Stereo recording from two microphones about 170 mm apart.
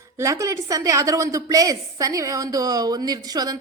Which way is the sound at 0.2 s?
20° right (ahead or behind).